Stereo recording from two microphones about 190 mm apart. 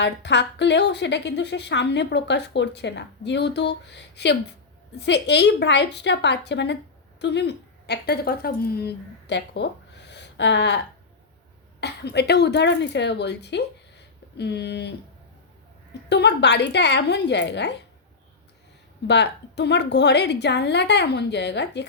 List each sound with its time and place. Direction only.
0.0 s a woman's voice: 65° left (ahead or behind)
11.8 s a woman's voice: 60° left (ahead or behind)
16.0 s a woman's voice: 65° left (ahead or behind)
19.0 s a woman's voice: 65° left (ahead or behind)